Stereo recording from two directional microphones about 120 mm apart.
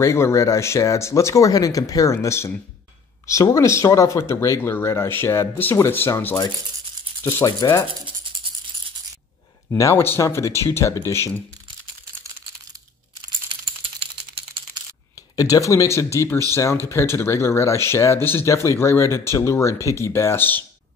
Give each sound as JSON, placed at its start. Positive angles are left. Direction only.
{"t": 0.0, "sound": "speech", "side_deg": 25}
{"t": 3.5, "sound": "speech", "side_deg": 25}
{"t": 7.4, "sound": "rub", "side_deg": 35}
{"t": 9.7, "sound": "speech", "side_deg": 25}
{"t": 15.3, "sound": "speech", "side_deg": 30}